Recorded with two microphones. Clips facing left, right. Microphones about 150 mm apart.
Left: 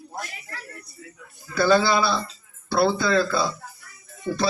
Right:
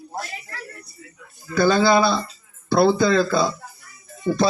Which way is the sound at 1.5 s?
45° right (ahead or behind).